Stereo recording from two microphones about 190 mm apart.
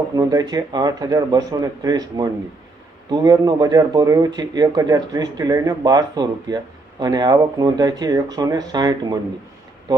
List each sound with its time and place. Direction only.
0.2 s speech: 20° right (ahead or behind)